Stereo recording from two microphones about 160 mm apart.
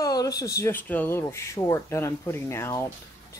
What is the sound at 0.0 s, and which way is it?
Speech, 20° left (ahead or behind).